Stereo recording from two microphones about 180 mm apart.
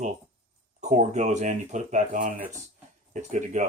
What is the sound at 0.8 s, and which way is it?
Speech, 40° right (ahead or behind).